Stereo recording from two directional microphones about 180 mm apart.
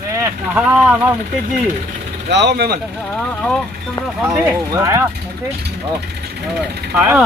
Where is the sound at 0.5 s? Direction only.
10° right (ahead or behind).